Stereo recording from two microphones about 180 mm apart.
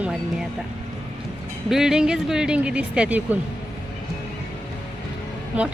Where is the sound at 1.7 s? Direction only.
5° right (ahead or behind).